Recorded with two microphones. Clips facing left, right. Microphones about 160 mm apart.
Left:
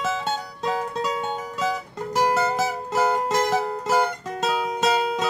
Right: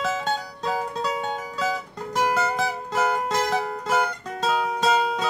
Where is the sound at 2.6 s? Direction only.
5° left (ahead or behind).